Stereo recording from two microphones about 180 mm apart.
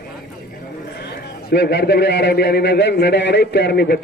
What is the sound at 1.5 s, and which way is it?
A man's voice, 70° left (ahead or behind).